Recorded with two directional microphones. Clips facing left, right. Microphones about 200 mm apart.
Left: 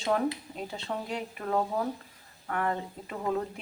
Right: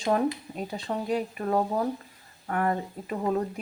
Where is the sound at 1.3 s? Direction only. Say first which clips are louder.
Right 3 dB; 10° right (ahead or behind).